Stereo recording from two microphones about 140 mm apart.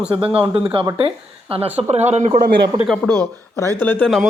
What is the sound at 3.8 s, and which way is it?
Speech, 10° left (ahead or behind).